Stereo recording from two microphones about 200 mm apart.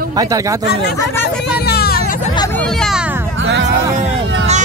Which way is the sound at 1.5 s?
50° left (ahead or behind).